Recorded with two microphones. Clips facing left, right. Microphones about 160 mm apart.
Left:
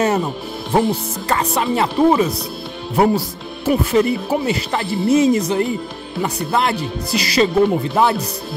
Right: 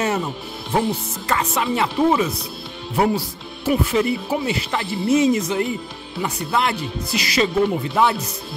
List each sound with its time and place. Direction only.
0.0 s speech: 40° left (ahead or behind)